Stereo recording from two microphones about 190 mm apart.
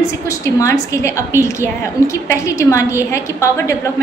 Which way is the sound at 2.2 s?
15° left (ahead or behind).